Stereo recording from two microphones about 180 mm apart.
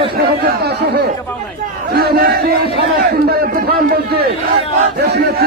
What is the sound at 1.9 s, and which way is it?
Speech, 60° right (ahead or behind).